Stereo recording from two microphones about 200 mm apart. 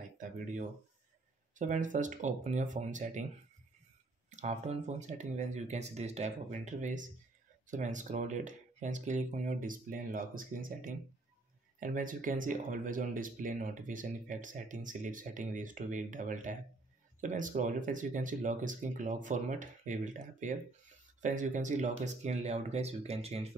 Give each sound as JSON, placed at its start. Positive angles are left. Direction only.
{"t": 1.6, "sound": "speech", "side_deg": -40}
{"t": 4.3, "sound": "speech", "side_deg": -35}